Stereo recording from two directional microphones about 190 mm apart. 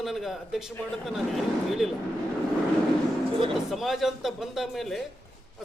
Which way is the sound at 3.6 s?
Centre (ahead or behind).